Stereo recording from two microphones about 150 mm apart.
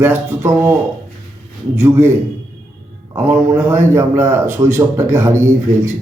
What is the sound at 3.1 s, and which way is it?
A man's voice, 15° right (ahead or behind).